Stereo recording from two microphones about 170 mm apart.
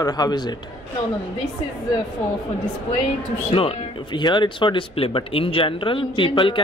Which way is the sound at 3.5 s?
35° left (ahead or behind).